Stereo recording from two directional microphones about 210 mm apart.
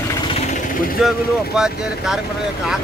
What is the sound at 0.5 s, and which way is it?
Vehicle, 40° left (ahead or behind).